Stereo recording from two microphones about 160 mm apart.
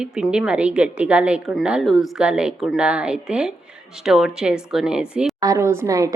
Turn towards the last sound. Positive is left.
turn(degrees=-20)  # may be behind; listen again after turning